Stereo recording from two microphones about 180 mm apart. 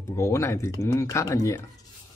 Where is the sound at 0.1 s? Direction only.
15° left (ahead or behind).